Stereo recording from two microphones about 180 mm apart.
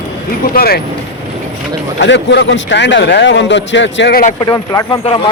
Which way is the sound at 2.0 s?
75° left (ahead or behind).